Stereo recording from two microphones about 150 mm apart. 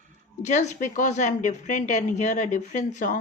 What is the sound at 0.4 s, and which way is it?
A woman's voice, 50° left (ahead or behind).